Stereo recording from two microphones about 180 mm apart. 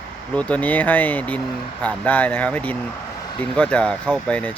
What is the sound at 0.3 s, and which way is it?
Speech, 10° left (ahead or behind).